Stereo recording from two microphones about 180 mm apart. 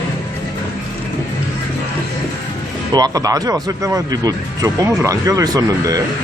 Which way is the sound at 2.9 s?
20° right (ahead or behind).